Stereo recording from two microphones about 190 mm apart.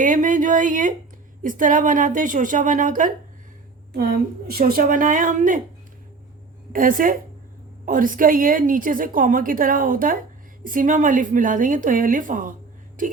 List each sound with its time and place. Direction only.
0.0 s a sound: 40° right (ahead or behind)
1.4 s a woman's voice: 45° right (ahead or behind)
6.7 s a woman's voice: 45° right (ahead or behind)